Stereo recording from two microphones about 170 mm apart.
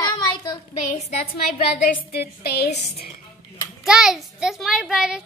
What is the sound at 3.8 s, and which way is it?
A child's voice, 5° right (ahead or behind).